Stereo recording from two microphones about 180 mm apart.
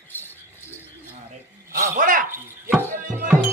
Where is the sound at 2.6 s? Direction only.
10° right (ahead or behind).